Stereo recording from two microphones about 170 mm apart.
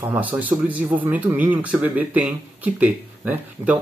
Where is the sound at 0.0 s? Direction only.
10° right (ahead or behind).